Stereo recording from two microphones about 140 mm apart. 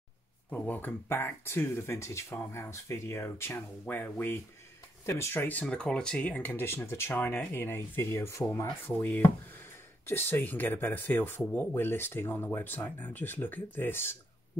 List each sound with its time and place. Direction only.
0.5 s speech: 10° left (ahead or behind)
8.6 s speech: 10° left (ahead or behind)